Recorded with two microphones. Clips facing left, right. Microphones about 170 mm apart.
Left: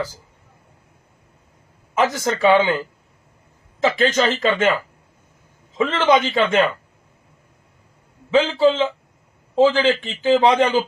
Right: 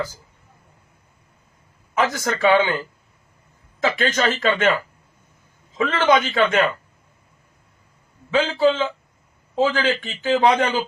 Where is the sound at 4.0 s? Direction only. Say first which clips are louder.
Left 3 dB; 25° left (ahead or behind).